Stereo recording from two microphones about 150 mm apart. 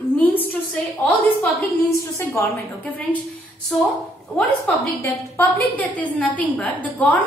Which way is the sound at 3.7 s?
Centre (ahead or behind).